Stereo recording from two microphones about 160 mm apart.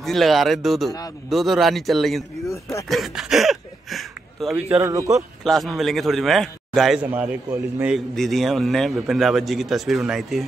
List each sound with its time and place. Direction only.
0.0 s a man's voice: centre (ahead or behind)
4.8 s a man's voice: 20° right (ahead or behind)
5.4 s a man's voice: centre (ahead or behind)
7.2 s a man's voice: 10° right (ahead or behind)